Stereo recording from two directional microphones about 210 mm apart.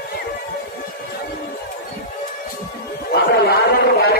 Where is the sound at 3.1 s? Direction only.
50° left (ahead or behind).